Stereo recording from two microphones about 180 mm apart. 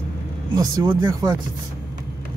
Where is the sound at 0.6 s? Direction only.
20° right (ahead or behind).